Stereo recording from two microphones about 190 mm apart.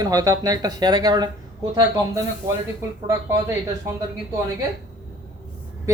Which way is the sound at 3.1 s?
15° right (ahead or behind).